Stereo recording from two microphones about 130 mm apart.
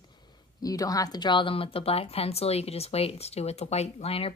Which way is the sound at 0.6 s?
30° left (ahead or behind).